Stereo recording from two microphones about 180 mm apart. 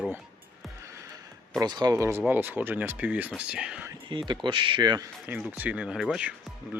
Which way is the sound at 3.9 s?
25° right (ahead or behind).